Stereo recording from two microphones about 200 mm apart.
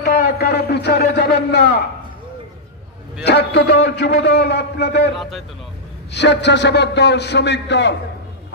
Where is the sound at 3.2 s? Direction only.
55° left (ahead or behind).